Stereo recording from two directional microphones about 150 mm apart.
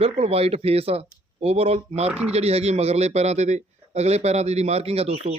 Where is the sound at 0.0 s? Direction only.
40° right (ahead or behind).